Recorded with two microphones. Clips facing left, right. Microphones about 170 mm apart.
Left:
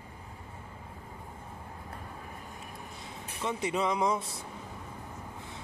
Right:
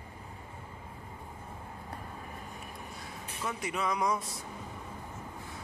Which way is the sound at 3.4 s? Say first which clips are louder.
Left 4 dB; 25° left (ahead or behind).